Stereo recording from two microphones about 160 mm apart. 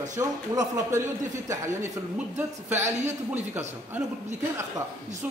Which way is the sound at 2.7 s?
45° right (ahead or behind).